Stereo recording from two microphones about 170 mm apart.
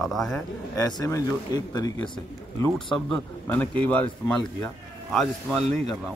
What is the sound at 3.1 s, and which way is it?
A woman's voice, 10° left (ahead or behind).